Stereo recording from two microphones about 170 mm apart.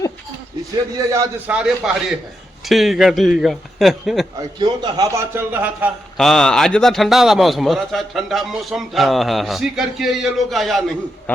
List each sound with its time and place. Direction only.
0.9 s a man's voice: 20° right (ahead or behind)
1.5 s a man's voice: 5° right (ahead or behind)
4.4 s a man's voice: 25° right (ahead or behind)
6.1 s a man's voice: centre (ahead or behind)